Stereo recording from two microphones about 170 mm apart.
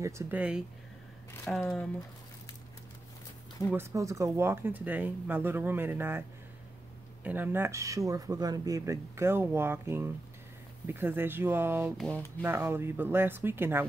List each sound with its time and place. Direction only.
0.0 s speech: 10° right (ahead or behind)
1.4 s speech: 5° left (ahead or behind)
3.7 s speech: 15° right (ahead or behind)
7.2 s speech: 10° right (ahead or behind)